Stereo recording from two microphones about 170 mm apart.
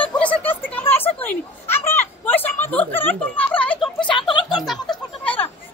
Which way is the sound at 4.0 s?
30° left (ahead or behind).